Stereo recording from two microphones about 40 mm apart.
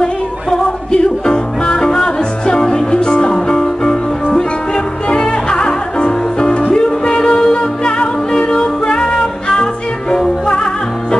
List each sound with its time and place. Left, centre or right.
0.9 s music: left